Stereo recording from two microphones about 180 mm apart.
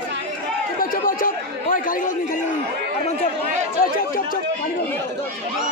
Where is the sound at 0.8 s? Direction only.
50° left (ahead or behind).